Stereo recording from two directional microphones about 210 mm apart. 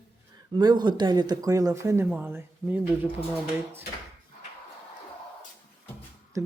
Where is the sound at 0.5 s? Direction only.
20° right (ahead or behind).